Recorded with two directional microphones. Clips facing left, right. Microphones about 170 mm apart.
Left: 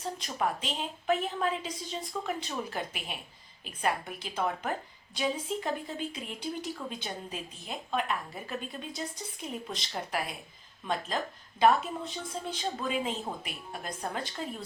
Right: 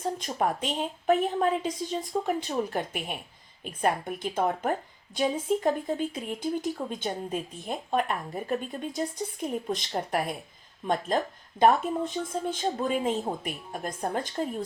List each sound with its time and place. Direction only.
0.2 s speech: 45° right (ahead or behind)
11.6 s speech: 50° right (ahead or behind)